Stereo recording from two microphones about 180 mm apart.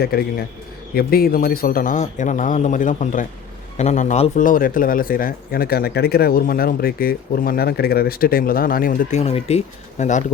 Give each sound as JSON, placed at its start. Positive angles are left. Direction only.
{"t": 0.0, "sound": "a man's voice", "side_deg": 60}